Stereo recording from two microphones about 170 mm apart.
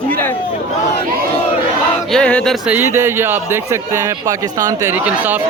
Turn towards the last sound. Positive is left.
turn(degrees=-10)  # may be behind; listen again after turning